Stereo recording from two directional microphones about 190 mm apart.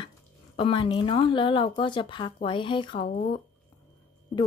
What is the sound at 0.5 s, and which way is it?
Speech, 25° left (ahead or behind).